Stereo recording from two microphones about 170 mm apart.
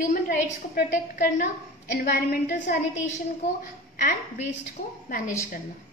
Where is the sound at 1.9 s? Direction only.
65° left (ahead or behind).